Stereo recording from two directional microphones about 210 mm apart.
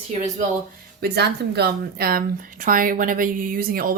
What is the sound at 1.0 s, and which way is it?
Speech, 50° right (ahead or behind).